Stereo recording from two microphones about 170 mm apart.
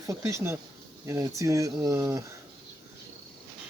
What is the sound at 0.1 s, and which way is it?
Speech, 15° right (ahead or behind).